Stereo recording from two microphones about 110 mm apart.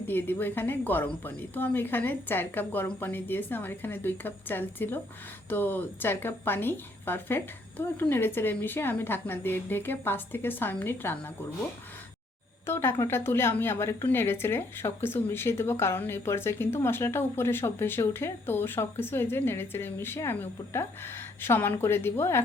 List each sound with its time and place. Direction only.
0.1 s a woman's voice: 20° left (ahead or behind)
12.6 s a woman's voice: 20° left (ahead or behind)